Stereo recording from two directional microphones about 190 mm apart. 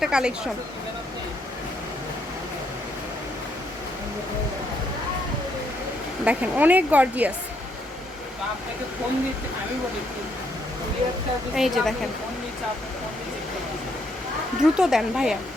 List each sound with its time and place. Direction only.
0.0 s speech: 5° right (ahead or behind)
6.2 s speech: 10° right (ahead or behind)
11.5 s speech: centre (ahead or behind)
14.6 s speech: 5° right (ahead or behind)